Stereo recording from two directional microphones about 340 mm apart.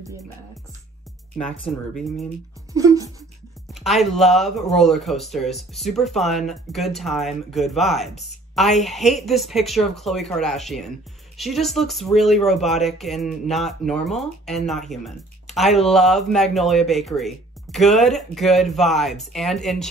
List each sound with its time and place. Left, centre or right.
1.7 s speech: centre
2.7 s speech: centre